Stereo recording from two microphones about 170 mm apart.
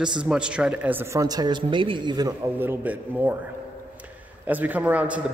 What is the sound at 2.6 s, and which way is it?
Speech, 10° right (ahead or behind).